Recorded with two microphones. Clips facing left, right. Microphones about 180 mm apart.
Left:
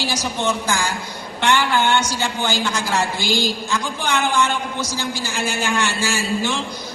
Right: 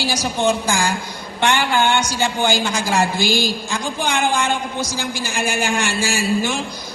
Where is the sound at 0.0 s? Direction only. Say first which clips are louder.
Right 3 dB; 10° right (ahead or behind).